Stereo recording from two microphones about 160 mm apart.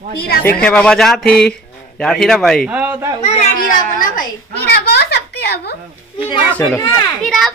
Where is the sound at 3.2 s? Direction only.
40° left (ahead or behind).